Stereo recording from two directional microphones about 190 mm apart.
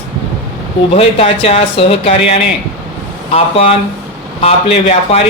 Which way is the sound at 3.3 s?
30° left (ahead or behind).